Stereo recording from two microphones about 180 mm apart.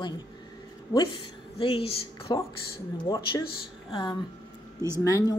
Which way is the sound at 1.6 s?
30° left (ahead or behind).